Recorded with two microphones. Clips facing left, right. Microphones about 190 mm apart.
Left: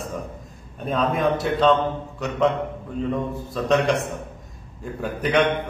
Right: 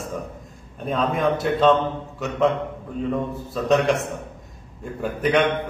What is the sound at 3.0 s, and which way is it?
Speech, centre (ahead or behind).